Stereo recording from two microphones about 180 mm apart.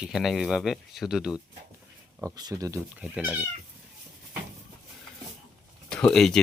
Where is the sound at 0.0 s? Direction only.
Centre (ahead or behind).